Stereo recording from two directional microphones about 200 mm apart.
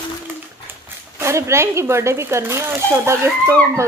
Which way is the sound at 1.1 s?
15° right (ahead or behind).